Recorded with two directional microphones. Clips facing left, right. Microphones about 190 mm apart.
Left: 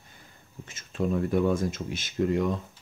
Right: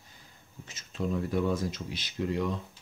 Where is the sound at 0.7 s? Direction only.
55° left (ahead or behind).